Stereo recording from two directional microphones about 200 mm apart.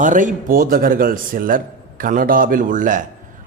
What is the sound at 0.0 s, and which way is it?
A man's voice, 40° right (ahead or behind).